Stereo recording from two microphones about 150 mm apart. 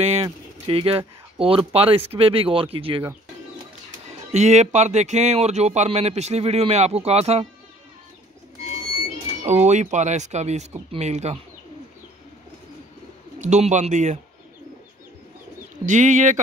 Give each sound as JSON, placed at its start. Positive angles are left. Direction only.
{"t": 0.0, "sound": "speech", "side_deg": -40}
{"t": 4.3, "sound": "speech", "side_deg": -45}
{"t": 9.4, "sound": "speech", "side_deg": -45}
{"t": 13.4, "sound": "speech", "side_deg": -50}
{"t": 15.8, "sound": "speech", "side_deg": -55}